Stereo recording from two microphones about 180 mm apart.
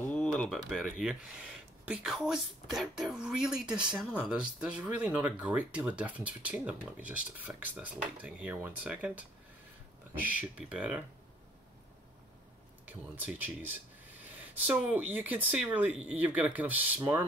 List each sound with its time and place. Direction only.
0.1 s a sound: 5° left (ahead or behind)
0.7 s speech: centre (ahead or behind)
10.7 s speech: 5° right (ahead or behind)
12.8 s speech: 10° right (ahead or behind)